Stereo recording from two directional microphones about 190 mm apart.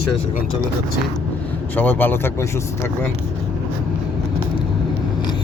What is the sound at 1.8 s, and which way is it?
Speech, 10° left (ahead or behind).